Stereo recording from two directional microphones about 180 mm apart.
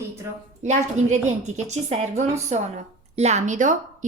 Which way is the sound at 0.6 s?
40° right (ahead or behind).